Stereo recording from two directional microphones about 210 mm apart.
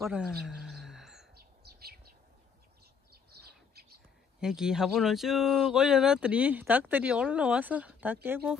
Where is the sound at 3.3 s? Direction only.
50° right (ahead or behind).